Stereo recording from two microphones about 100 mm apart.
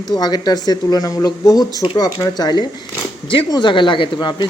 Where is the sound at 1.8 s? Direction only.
50° left (ahead or behind).